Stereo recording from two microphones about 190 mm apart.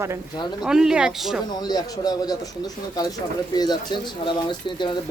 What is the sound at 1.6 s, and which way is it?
Speech, 20° left (ahead or behind).